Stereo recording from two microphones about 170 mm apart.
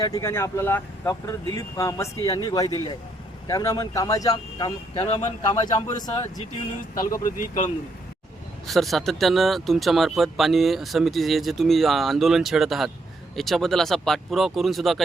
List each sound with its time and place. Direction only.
0.0 s speech: 20° left (ahead or behind)
5.0 s speech: 35° left (ahead or behind)
5.4 s speech: 25° left (ahead or behind)
7.0 s speech: 20° left (ahead or behind)
7.3 s speech: 50° left (ahead or behind)
8.6 s speech: centre (ahead or behind)